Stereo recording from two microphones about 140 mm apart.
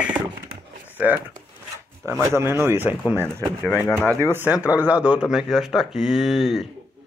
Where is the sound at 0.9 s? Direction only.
10° right (ahead or behind).